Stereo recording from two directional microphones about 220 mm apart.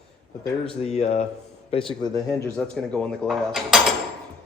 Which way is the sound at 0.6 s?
25° left (ahead or behind).